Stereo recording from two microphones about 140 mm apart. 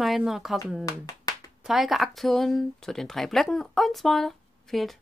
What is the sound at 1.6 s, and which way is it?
A woman's voice, centre (ahead or behind).